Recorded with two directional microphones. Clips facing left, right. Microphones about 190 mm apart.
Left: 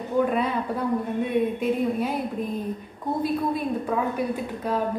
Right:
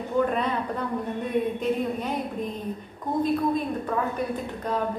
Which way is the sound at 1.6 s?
5° left (ahead or behind).